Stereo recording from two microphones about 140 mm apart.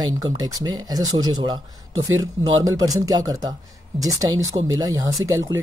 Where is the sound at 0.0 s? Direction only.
25° right (ahead or behind).